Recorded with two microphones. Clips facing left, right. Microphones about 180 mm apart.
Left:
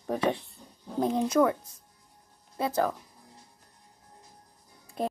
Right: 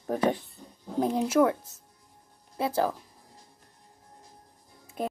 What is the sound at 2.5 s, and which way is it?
Speech, 25° right (ahead or behind).